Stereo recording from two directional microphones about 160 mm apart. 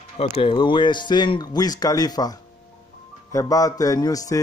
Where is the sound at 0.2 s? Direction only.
35° left (ahead or behind).